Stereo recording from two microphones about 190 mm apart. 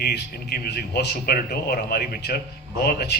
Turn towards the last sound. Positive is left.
turn(degrees=55)  # may be behind; listen again after turning